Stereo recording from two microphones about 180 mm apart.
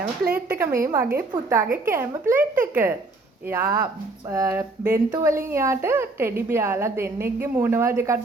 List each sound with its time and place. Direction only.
0.0 s speech: 55° right (ahead or behind)
0.8 s a woman's voice: 15° right (ahead or behind)